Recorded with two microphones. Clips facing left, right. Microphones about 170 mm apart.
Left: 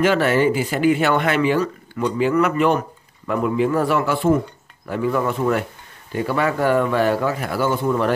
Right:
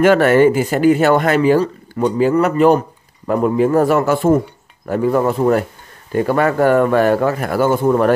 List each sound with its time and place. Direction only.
0.0 s a man's voice: 50° right (ahead or behind)